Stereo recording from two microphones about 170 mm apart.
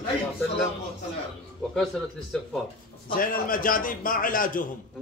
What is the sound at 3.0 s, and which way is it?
A man's voice, 55° left (ahead or behind).